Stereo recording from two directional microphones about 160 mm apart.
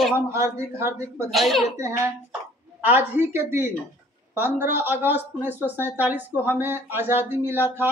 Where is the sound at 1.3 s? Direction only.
Centre (ahead or behind).